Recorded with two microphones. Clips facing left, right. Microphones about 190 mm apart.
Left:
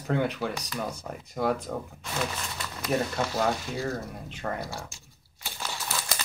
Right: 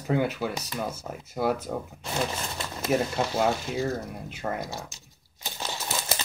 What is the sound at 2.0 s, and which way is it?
Speech, 30° right (ahead or behind).